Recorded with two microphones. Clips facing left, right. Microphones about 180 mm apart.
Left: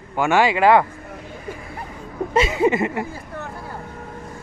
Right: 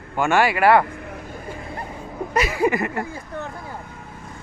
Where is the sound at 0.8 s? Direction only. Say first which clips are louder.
Right 3 dB; 70° right (ahead or behind).